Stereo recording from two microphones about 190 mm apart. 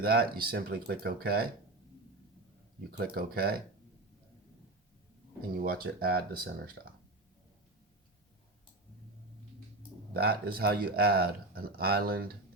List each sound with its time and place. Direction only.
0.0 s speech: 55° right (ahead or behind)
2.9 s speech: 55° right (ahead or behind)
5.5 s speech: 55° right (ahead or behind)
10.2 s speech: 55° right (ahead or behind)